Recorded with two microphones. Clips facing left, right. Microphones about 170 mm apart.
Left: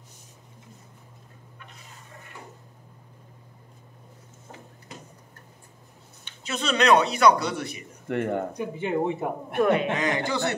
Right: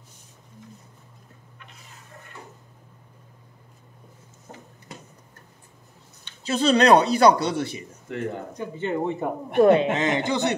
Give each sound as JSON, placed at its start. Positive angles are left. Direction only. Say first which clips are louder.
{"t": 6.4, "sound": "speech", "louder": "right 5 dB", "side_deg": -30}
{"t": 8.1, "sound": "speech", "louder": "left 4 dB", "side_deg": 60}
{"t": 8.5, "sound": "speech", "louder": "even", "side_deg": 10}
{"t": 9.6, "sound": "speech", "louder": "right 5 dB", "side_deg": -30}